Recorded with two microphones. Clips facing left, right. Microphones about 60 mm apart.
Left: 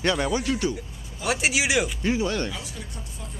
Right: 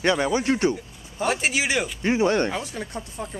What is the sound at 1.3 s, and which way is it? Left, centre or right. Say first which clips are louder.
Speech: even; centre.